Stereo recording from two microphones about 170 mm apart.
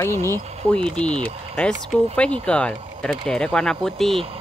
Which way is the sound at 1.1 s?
30° right (ahead or behind).